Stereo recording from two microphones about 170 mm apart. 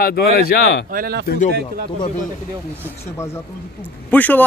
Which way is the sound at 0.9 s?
60° right (ahead or behind).